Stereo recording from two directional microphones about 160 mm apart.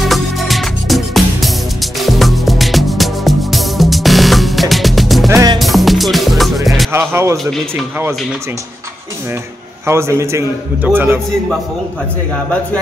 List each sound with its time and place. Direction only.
0.0 s music: centre (ahead or behind)
5.3 s music: 20° right (ahead or behind)
5.6 s music: centre (ahead or behind)
6.9 s speech: 15° right (ahead or behind)
9.8 s a man's voice: 15° right (ahead or behind)